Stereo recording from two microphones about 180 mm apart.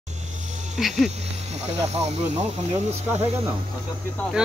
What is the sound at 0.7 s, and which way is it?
Speech, centre (ahead or behind).